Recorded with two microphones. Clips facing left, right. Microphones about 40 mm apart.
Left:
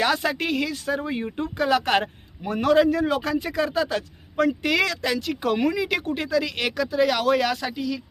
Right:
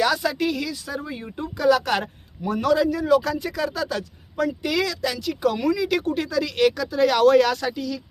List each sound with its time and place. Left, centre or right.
0.0 s speech: left
5.0 s speech: left